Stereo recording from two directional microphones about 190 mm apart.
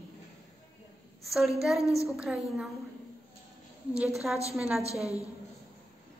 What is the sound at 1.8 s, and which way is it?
Speech, 15° left (ahead or behind).